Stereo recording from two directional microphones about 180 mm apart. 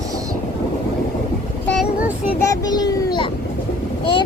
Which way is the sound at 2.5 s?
20° left (ahead or behind).